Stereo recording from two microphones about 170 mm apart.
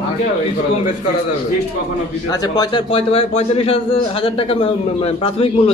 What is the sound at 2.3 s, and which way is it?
A man's voice, 20° left (ahead or behind).